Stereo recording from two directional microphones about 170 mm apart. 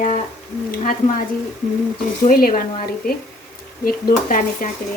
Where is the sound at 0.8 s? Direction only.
50° left (ahead or behind).